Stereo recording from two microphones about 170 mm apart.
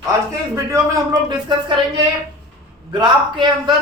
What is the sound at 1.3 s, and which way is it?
Speech, 25° right (ahead or behind).